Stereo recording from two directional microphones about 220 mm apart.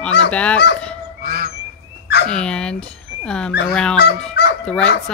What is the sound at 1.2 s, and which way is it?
Goose, 45° right (ahead or behind).